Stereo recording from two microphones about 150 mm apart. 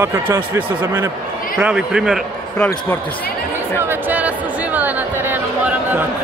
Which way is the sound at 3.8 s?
15° right (ahead or behind).